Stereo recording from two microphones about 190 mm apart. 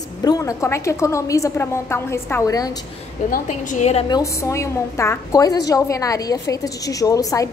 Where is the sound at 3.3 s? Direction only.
40° left (ahead or behind).